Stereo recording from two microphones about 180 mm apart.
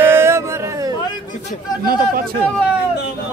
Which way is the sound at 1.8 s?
55° right (ahead or behind).